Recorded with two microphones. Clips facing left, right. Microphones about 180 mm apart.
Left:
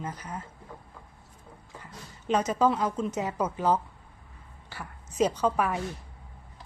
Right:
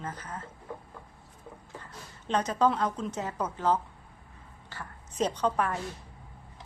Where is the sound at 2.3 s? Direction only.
10° left (ahead or behind).